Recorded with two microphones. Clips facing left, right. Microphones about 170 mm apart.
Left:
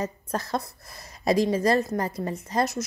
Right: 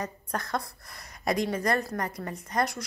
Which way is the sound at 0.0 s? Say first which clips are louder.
Left 4 dB; 25° left (ahead or behind).